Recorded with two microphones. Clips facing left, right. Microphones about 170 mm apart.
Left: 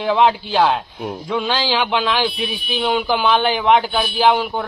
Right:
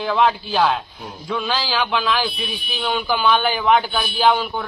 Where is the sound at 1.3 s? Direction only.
15° left (ahead or behind).